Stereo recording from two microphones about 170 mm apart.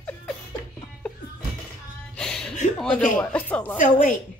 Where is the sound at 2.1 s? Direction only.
5° left (ahead or behind).